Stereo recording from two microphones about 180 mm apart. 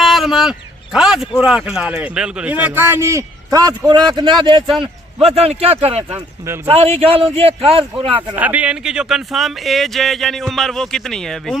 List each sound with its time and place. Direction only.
0.0 s a sound: centre (ahead or behind)
0.9 s speech: 5° right (ahead or behind); by 6.1 s 35° right (ahead or behind)
6.1 s speech: 15° right (ahead or behind)
6.7 s speech: 35° right (ahead or behind)
8.4 s speech: 10° right (ahead or behind)